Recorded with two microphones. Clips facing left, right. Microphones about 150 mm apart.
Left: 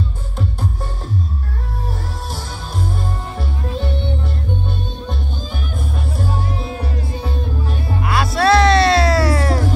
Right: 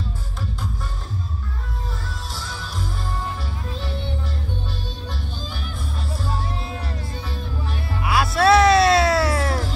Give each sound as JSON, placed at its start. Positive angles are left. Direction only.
{"t": 2.3, "sound": "music", "side_deg": 55}
{"t": 8.0, "sound": "music", "side_deg": -5}